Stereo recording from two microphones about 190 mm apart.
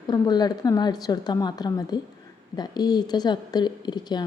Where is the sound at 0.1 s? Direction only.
20° left (ahead or behind).